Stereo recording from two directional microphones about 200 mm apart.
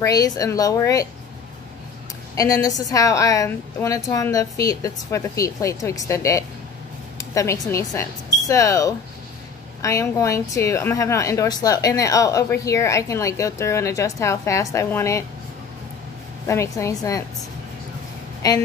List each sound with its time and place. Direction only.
0.0 s a woman's voice: 20° left (ahead or behind)
2.3 s a woman's voice: 15° left (ahead or behind)
16.4 s a woman's voice: 15° left (ahead or behind)
18.4 s a woman's voice: 15° left (ahead or behind)